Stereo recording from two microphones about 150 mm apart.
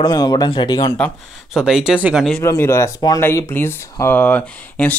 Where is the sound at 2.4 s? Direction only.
20° left (ahead or behind).